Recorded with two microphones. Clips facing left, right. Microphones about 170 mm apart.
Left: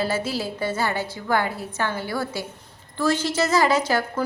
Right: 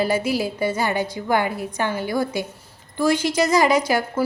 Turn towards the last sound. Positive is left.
turn(degrees=-10)  # may be behind; listen again after turning